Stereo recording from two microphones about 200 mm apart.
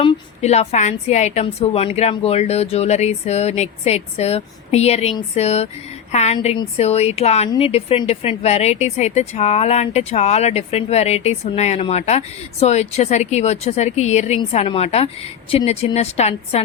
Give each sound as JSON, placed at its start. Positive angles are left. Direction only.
{"t": 0.0, "sound": "speech", "side_deg": 30}